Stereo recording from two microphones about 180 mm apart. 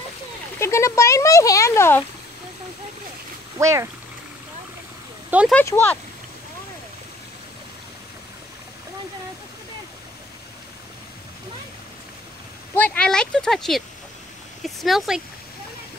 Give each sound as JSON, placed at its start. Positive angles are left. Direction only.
{"t": 0.6, "sound": "speech", "side_deg": 15}
{"t": 3.5, "sound": "speech", "side_deg": -15}
{"t": 5.5, "sound": "speech", "side_deg": 10}
{"t": 12.7, "sound": "speech", "side_deg": 10}